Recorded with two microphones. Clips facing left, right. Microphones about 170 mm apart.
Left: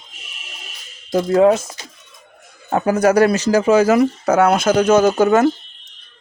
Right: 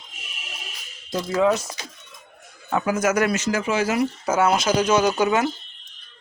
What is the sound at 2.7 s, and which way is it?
Speech, 40° left (ahead or behind).